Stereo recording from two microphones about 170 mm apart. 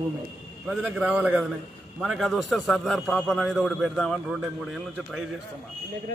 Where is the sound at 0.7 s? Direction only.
5° right (ahead or behind).